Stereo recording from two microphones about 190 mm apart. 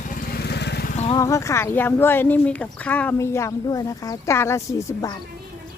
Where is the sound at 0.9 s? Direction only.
30° left (ahead or behind).